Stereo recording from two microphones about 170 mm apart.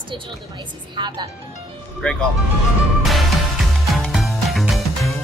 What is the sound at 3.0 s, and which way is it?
Music, centre (ahead or behind).